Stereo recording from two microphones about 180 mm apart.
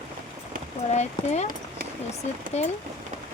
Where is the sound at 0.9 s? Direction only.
40° left (ahead or behind).